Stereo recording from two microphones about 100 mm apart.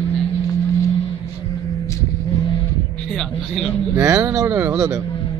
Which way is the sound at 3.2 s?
5° left (ahead or behind).